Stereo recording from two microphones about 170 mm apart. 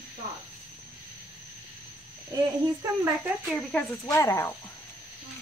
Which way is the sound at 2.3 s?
15° right (ahead or behind).